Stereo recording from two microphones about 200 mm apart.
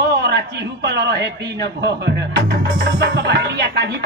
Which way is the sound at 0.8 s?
60° right (ahead or behind).